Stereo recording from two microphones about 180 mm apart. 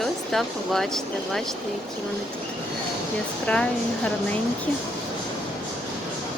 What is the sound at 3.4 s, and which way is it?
Speech, 5° left (ahead or behind).